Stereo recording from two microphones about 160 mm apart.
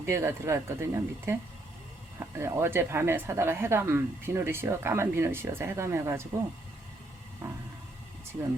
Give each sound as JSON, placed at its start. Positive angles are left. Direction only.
{"t": 0.0, "sound": "speech", "side_deg": -20}
{"t": 7.4, "sound": "speech", "side_deg": -15}